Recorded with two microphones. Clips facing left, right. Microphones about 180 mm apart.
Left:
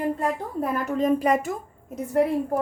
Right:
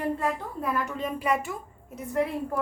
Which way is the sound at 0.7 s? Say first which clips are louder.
Left 8 dB; 45° left (ahead or behind).